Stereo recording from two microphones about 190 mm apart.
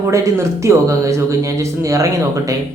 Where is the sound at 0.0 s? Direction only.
15° right (ahead or behind).